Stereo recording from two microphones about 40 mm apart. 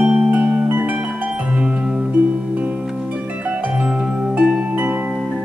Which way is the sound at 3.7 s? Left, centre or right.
Centre.